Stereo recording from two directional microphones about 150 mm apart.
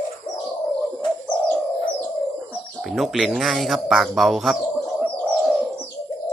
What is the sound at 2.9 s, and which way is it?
Speech, centre (ahead or behind).